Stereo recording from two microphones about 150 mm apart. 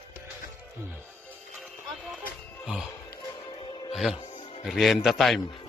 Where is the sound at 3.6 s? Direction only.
35° left (ahead or behind).